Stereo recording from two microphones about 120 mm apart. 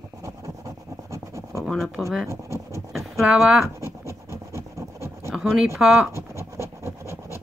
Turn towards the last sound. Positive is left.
turn(degrees=-20)  # may be behind; listen again after turning